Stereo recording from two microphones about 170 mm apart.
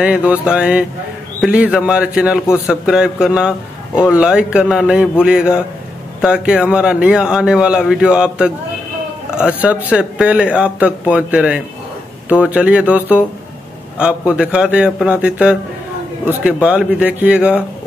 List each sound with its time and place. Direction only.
0.0 s a man's voice: 5° right (ahead or behind)